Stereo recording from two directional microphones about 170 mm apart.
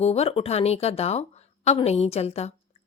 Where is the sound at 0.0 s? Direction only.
35° left (ahead or behind).